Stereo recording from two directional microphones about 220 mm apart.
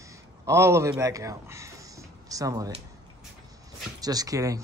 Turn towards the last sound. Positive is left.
turn(degrees=-15)  # may be behind; listen again after turning